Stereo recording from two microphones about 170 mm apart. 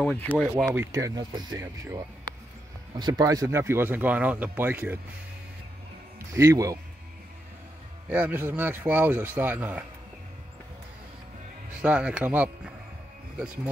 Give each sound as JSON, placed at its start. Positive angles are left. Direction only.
{"t": 0.0, "sound": "speech", "side_deg": 10}
{"t": 0.7, "sound": "speech", "side_deg": -20}
{"t": 6.1, "sound": "a man's voice", "side_deg": -15}
{"t": 8.1, "sound": "speech", "side_deg": -10}
{"t": 11.8, "sound": "speech", "side_deg": -5}